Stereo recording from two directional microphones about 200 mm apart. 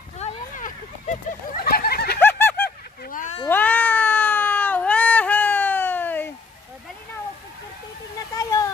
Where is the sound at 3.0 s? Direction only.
40° left (ahead or behind).